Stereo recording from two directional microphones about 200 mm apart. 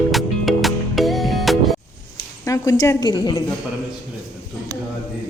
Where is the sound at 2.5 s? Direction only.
15° left (ahead or behind).